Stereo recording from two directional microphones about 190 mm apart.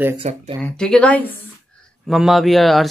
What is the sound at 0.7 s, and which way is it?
Speech, 5° left (ahead or behind).